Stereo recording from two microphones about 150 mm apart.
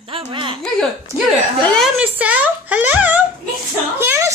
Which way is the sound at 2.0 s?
10° right (ahead or behind).